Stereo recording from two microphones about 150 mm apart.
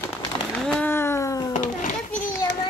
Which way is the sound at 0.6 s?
10° left (ahead or behind).